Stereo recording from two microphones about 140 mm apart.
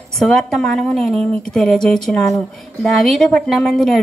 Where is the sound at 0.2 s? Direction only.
Centre (ahead or behind).